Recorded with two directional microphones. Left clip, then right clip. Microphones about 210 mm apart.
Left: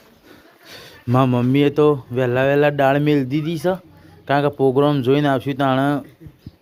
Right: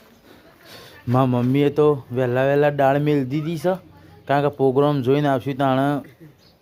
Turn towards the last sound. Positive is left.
turn(degrees=-5)  # may be behind; listen again after turning